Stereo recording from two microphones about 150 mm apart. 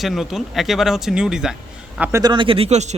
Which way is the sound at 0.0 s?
Centre (ahead or behind).